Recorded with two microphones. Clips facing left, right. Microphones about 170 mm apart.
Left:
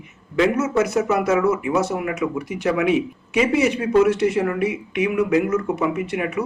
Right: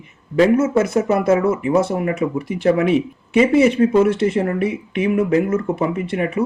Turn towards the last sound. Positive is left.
turn(degrees=-35)  # may be behind; listen again after turning